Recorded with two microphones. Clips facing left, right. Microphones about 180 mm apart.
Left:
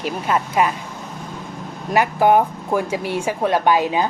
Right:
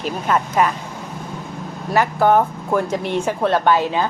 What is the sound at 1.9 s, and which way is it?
Speech, 15° left (ahead or behind).